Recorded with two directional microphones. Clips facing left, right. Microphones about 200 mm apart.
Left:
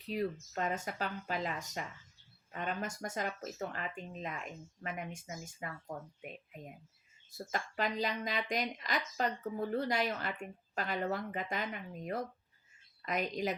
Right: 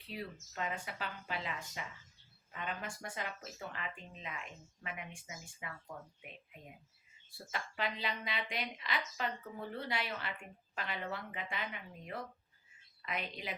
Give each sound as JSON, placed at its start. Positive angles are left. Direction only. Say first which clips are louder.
{"t": 0.1, "sound": "speech", "louder": "left 9 dB", "side_deg": 45}
{"t": 7.3, "sound": "speech", "louder": "left 5 dB", "side_deg": 45}